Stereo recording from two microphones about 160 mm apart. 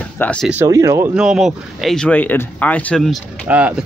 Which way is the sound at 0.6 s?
20° right (ahead or behind).